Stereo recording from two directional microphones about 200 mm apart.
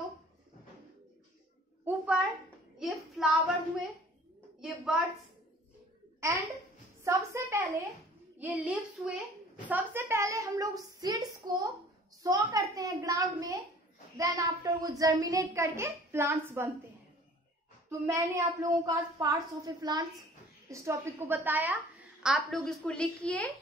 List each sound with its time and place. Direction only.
1.9 s a sound: 5° right (ahead or behind)
2.8 s child singing: centre (ahead or behind)
4.6 s a woman's voice: 5° right (ahead or behind)
7.1 s a woman's voice: 15° right (ahead or behind)
17.8 s a child's voice: 15° right (ahead or behind); by 23.5 s 5° left (ahead or behind)